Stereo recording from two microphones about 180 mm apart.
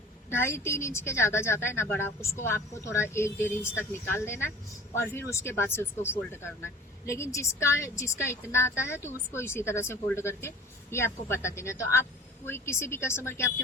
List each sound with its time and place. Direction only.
0.3 s speech: 15° left (ahead or behind)